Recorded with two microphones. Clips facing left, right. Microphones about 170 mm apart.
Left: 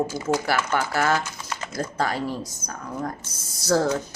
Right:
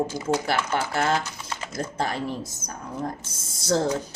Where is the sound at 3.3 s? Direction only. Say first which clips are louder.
Left 3 dB; 25° right (ahead or behind).